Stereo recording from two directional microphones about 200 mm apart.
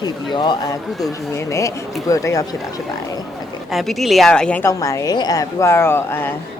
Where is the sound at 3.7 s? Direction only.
Centre (ahead or behind).